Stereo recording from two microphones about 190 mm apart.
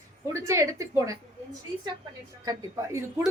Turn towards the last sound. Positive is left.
turn(degrees=-15)  # may be behind; listen again after turning